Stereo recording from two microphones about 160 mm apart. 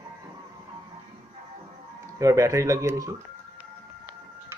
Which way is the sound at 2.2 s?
20° right (ahead or behind).